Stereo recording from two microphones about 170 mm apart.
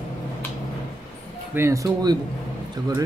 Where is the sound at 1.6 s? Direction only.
15° right (ahead or behind).